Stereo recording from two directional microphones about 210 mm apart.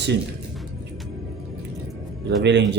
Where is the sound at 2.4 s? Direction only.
55° right (ahead or behind).